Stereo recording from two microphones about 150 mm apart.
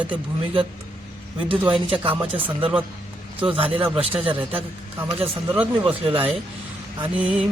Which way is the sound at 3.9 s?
35° right (ahead or behind).